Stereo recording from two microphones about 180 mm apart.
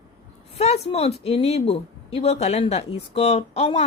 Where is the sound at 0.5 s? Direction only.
35° left (ahead or behind).